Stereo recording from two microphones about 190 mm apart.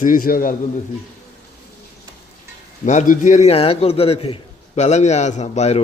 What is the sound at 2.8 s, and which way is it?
A man's voice, 40° left (ahead or behind).